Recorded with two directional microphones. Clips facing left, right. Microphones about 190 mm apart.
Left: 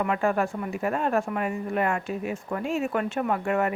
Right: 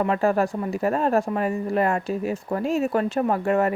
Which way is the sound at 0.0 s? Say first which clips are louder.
Right 4 dB; 35° right (ahead or behind).